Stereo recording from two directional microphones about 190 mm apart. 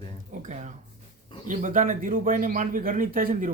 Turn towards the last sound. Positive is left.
turn(degrees=-45)  # may be behind; listen again after turning